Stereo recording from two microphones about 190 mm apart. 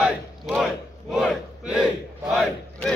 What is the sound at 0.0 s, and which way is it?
Battle cry, 5° right (ahead or behind).